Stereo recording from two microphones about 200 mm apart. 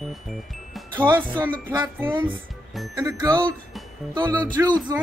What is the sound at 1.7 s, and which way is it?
Speech, 10° right (ahead or behind).